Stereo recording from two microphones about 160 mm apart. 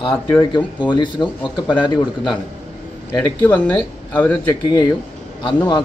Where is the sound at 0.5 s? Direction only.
30° left (ahead or behind).